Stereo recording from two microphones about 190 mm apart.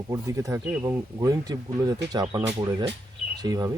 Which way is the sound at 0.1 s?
15° right (ahead or behind).